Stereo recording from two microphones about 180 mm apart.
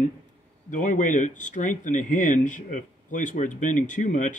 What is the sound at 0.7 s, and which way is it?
Speech, 45° left (ahead or behind).